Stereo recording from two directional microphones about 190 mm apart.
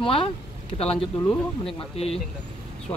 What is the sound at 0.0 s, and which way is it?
Speech, 30° left (ahead or behind).